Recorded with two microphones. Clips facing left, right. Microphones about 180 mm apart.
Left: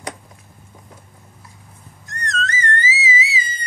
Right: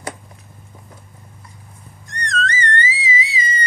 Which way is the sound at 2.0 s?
Centre (ahead or behind).